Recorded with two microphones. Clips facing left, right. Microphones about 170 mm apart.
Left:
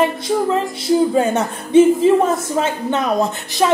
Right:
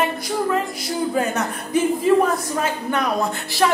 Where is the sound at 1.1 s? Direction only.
25° left (ahead or behind).